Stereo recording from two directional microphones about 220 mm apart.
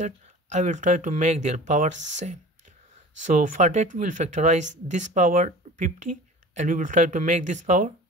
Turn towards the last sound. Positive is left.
turn(degrees=-35)  # may be behind; listen again after turning